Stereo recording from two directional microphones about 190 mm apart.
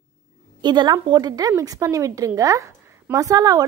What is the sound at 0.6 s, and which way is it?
A woman's voice, 25° right (ahead or behind).